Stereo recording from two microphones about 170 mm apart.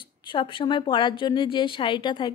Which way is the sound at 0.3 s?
30° left (ahead or behind).